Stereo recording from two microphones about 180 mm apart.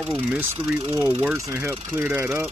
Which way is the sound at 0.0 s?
5° right (ahead or behind).